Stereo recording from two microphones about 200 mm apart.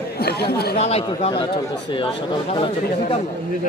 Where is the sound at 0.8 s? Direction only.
30° left (ahead or behind).